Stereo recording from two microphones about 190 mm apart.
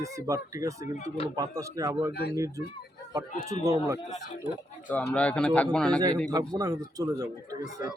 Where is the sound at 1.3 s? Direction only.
15° right (ahead or behind).